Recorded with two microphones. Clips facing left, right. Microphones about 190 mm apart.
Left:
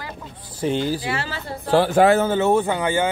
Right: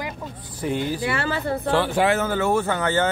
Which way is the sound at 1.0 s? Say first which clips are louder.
Right 3 dB; 55° right (ahead or behind).